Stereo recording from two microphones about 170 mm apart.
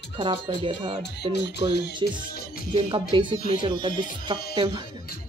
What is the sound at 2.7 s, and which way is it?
Speech, 30° right (ahead or behind).